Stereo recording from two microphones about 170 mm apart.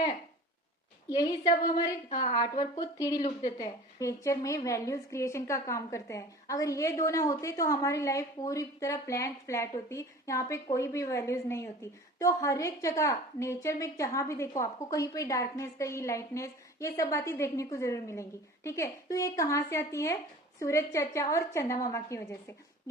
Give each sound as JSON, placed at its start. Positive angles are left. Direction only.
{"t": 1.1, "sound": "a woman's voice", "side_deg": 20}